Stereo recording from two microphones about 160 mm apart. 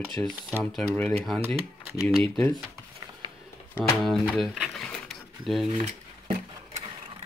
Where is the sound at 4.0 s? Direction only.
Centre (ahead or behind).